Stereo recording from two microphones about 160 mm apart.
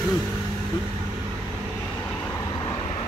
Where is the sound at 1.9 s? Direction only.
10° left (ahead or behind).